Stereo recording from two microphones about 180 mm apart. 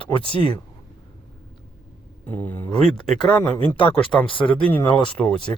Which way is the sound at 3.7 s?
30° left (ahead or behind).